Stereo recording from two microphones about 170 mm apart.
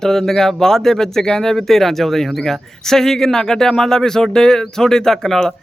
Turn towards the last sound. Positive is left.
turn(degrees=5)  # may be behind; listen again after turning